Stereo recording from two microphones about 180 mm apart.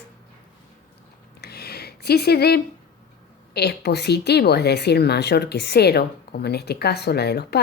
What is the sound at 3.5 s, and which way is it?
A woman's voice, 65° left (ahead or behind).